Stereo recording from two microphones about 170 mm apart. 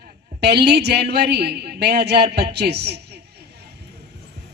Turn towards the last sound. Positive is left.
turn(degrees=-70)  # may be behind; listen again after turning